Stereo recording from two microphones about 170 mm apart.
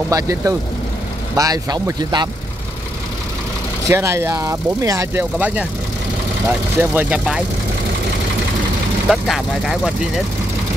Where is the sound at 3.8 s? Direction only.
15° right (ahead or behind).